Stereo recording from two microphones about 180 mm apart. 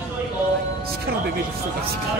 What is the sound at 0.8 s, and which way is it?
Music, 60° right (ahead or behind).